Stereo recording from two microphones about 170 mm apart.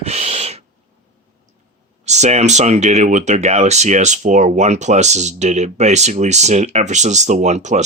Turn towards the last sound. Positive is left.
turn(degrees=-40)  # may be behind; listen again after turning